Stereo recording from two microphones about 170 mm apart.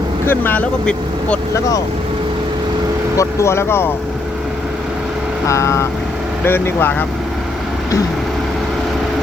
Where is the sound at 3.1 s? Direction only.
15° left (ahead or behind).